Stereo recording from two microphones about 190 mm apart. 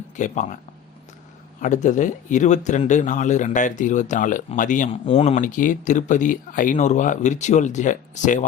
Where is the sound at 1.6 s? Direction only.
40° left (ahead or behind).